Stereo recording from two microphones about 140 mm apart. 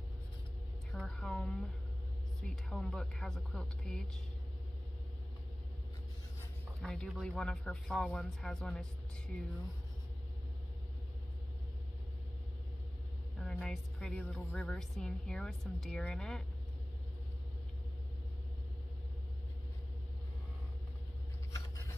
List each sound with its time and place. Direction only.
0.9 s a woman's voice: 5° left (ahead or behind)
6.8 s a woman's voice: 5° left (ahead or behind)
13.4 s a woman's voice: 5° left (ahead or behind)
21.5 s scissors: 25° left (ahead or behind)